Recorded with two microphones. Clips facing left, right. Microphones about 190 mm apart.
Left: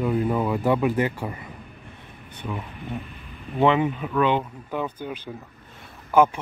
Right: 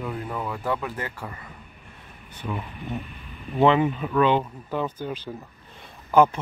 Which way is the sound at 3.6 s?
10° left (ahead or behind).